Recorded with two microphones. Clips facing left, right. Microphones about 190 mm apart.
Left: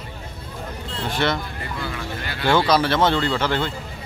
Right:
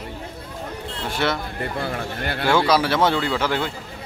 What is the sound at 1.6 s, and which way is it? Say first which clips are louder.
Speech: right 4 dB; 55° right (ahead or behind).